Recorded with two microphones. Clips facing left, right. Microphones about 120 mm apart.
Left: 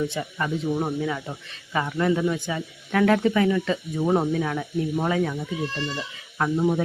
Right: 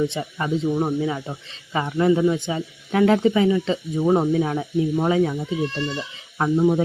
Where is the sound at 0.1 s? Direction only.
20° right (ahead or behind).